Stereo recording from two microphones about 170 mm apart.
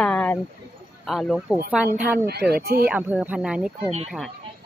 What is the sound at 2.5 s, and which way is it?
Speech, 65° right (ahead or behind).